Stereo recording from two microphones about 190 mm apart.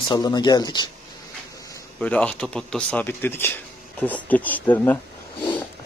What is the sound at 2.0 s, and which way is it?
Speech, 5° left (ahead or behind).